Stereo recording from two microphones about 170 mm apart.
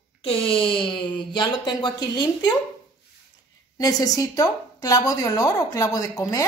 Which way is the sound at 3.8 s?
20° left (ahead or behind).